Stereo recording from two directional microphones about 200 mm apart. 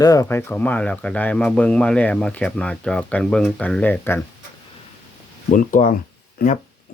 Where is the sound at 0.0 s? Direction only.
15° left (ahead or behind).